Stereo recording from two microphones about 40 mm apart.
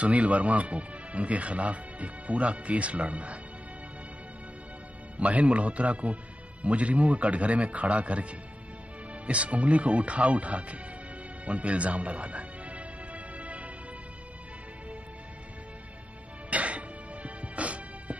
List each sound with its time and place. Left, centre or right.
0.0 s speech: right
5.1 s speech: right
11.4 s music: right
16.4 s music: right